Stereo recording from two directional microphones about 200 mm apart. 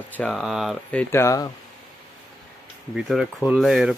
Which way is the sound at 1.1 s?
15° left (ahead or behind).